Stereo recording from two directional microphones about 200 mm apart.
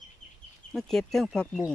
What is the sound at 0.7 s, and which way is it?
Speech, centre (ahead or behind).